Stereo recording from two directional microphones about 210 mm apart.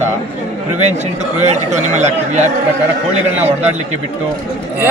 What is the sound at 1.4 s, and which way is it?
Speech, 35° right (ahead or behind).